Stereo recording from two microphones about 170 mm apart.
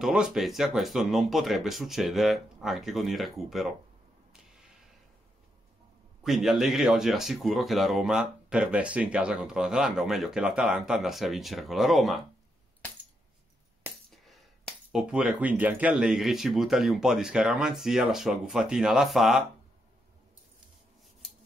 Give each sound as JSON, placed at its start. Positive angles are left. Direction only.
{"t": 0.0, "sound": "speech", "side_deg": -5}
{"t": 6.2, "sound": "speech", "side_deg": 0}
{"t": 14.1, "sound": "speech", "side_deg": 0}